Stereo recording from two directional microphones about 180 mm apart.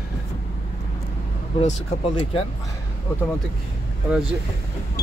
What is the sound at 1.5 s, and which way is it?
Speech, 35° left (ahead or behind).